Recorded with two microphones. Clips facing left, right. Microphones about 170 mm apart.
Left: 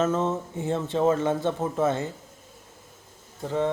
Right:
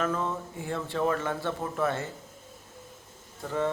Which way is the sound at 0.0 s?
25° left (ahead or behind).